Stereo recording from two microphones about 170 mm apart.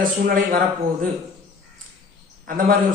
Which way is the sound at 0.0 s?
55° right (ahead or behind).